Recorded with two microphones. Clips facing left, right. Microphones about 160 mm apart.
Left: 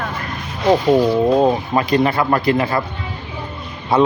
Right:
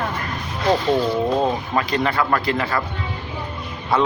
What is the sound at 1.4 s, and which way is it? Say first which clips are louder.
Speech: left 5 dB; 20° left (ahead or behind).